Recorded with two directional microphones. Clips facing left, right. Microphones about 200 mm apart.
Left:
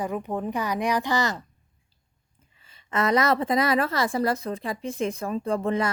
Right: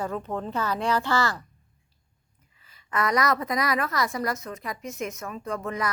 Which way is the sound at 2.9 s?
25° left (ahead or behind).